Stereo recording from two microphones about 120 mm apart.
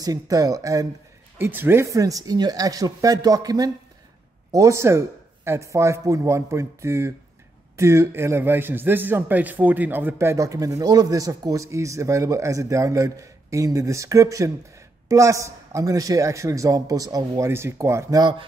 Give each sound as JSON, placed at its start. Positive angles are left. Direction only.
{"t": 0.0, "sound": "a man's voice", "side_deg": -30}
{"t": 1.4, "sound": "a man's voice", "side_deg": -20}